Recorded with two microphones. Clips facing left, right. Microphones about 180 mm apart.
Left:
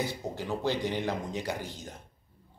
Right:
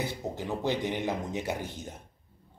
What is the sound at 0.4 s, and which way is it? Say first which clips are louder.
Speech: even; 20° right (ahead or behind).